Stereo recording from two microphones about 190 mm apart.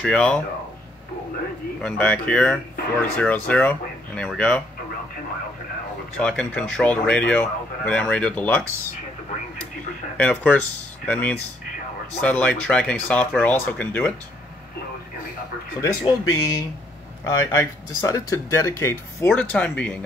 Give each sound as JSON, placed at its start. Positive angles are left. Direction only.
{"t": 0.0, "sound": "speech", "side_deg": 5}
{"t": 1.8, "sound": "speech", "side_deg": 5}
{"t": 6.1, "sound": "speech", "side_deg": 5}
{"t": 10.1, "sound": "speech", "side_deg": 10}
{"t": 15.8, "sound": "speech", "side_deg": 15}